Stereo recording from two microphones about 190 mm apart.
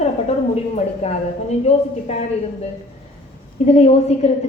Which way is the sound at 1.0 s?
35° left (ahead or behind).